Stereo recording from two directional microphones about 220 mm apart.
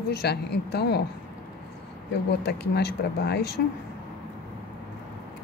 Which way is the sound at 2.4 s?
45° left (ahead or behind).